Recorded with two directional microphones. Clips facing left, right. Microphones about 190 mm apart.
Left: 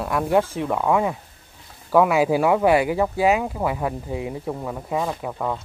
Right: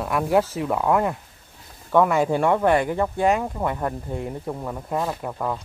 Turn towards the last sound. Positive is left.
turn(degrees=0)  # may be behind; listen again after turning